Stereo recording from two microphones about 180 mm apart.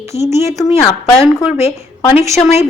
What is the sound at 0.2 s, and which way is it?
Speech, 15° right (ahead or behind).